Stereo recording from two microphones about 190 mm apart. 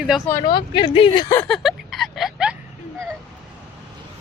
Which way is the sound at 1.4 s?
Centre (ahead or behind).